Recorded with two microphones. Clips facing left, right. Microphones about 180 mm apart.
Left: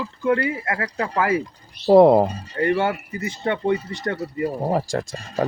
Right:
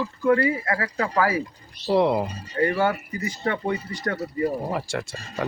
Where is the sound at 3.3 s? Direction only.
25° left (ahead or behind).